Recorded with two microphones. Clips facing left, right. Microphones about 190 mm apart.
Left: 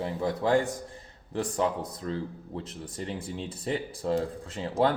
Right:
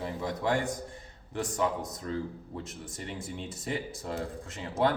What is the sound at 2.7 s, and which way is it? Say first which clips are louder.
Speech: left 4 dB; 30° left (ahead or behind).